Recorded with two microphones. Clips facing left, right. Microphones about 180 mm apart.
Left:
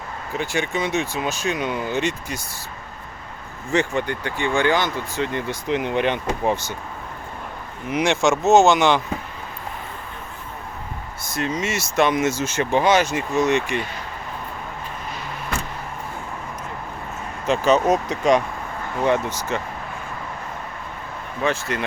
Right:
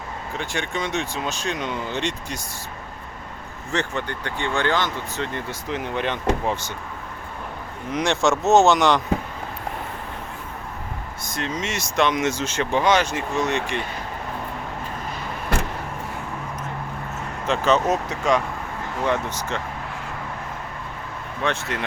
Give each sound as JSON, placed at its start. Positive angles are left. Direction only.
{"t": 0.3, "sound": "speech", "side_deg": 5}
{"t": 3.7, "sound": "speech", "side_deg": 10}
{"t": 7.9, "sound": "speech", "side_deg": 5}
{"t": 11.3, "sound": "speech", "side_deg": 5}
{"t": 17.4, "sound": "speech", "side_deg": 10}
{"t": 21.4, "sound": "speech", "side_deg": 0}